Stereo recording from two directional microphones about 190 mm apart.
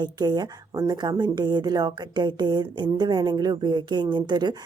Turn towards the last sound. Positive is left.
turn(degrees=-20)  # may be behind; listen again after turning